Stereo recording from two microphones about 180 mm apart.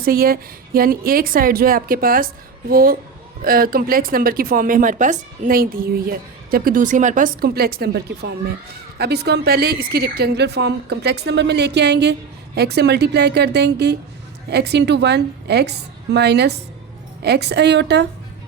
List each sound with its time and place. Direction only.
0.0 s a woman's voice: 55° right (ahead or behind)